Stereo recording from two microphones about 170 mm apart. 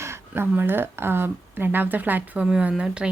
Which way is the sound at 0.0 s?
15° right (ahead or behind).